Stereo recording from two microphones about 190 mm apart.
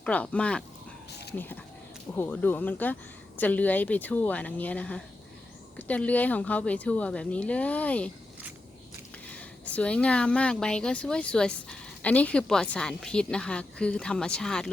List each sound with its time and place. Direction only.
0.0 s speech: 5° left (ahead or behind)
1.1 s a sound: 60° left (ahead or behind)
2.1 s speech: 10° left (ahead or behind)
9.3 s speech: 10° left (ahead or behind)